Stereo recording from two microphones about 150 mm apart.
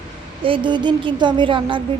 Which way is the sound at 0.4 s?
35° right (ahead or behind).